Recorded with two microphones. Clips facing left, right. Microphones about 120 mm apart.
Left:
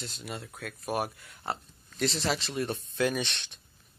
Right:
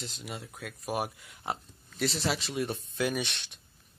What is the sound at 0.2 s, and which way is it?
Speech, 10° right (ahead or behind).